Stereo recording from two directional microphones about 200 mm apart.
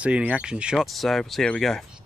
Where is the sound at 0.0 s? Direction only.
5° right (ahead or behind).